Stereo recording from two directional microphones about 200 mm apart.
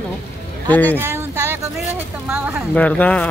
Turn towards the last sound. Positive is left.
turn(degrees=5)  # may be behind; listen again after turning